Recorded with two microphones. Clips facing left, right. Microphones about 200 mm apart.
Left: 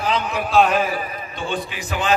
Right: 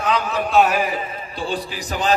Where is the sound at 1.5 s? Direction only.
35° right (ahead or behind).